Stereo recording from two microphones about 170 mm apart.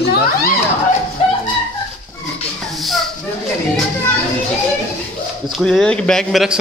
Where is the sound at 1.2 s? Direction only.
35° left (ahead or behind).